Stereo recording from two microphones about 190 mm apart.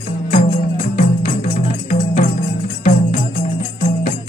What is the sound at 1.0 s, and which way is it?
Music, 40° left (ahead or behind).